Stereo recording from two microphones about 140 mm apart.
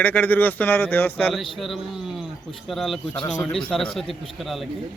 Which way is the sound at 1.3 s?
Centre (ahead or behind).